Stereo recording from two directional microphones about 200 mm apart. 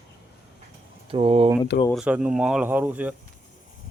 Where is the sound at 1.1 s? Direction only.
30° right (ahead or behind).